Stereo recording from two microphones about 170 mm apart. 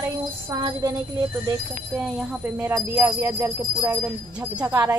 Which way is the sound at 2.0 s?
5° right (ahead or behind).